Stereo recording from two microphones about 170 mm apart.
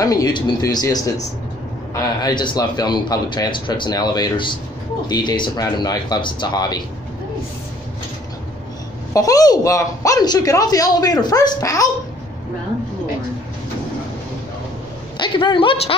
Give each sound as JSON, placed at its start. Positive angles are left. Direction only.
{"t": 0.0, "sound": "a woman's voice", "side_deg": 20}
{"t": 9.1, "sound": "a woman's voice", "side_deg": 20}
{"t": 15.1, "sound": "a woman's voice", "side_deg": 25}